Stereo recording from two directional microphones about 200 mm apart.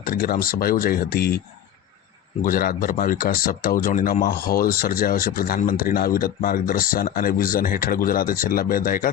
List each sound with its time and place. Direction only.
0.0 s speech: 45° left (ahead or behind)
2.4 s speech: 45° left (ahead or behind)